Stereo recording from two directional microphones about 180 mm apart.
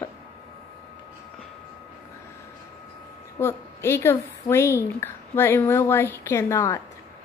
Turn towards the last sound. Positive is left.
turn(degrees=15)  # may be behind; listen again after turning